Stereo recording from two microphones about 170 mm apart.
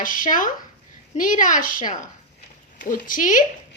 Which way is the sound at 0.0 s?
55° left (ahead or behind).